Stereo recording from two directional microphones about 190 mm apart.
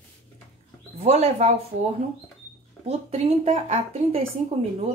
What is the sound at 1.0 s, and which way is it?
Speech, 35° right (ahead or behind).